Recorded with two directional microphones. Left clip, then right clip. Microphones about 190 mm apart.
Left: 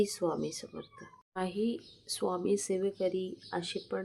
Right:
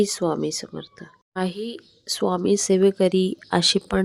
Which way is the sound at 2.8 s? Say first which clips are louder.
Right 14 dB; 55° right (ahead or behind).